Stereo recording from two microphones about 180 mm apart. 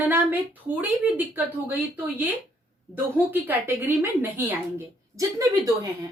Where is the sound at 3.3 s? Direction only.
10° right (ahead or behind).